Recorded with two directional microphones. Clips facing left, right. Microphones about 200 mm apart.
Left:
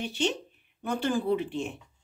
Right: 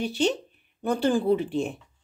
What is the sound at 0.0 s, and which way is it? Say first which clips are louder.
Speech: right 5 dB; 35° right (ahead or behind).